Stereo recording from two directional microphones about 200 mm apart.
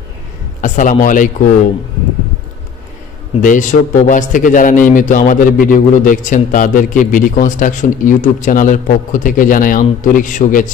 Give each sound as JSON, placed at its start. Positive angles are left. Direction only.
{"t": 0.6, "sound": "a man's voice", "side_deg": 40}
{"t": 3.4, "sound": "a man's voice", "side_deg": 40}